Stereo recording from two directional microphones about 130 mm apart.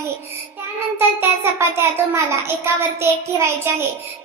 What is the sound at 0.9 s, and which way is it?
A child's voice, 20° right (ahead or behind).